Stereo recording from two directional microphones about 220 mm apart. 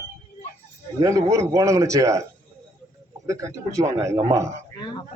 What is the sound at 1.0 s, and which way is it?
Speech, 15° right (ahead or behind).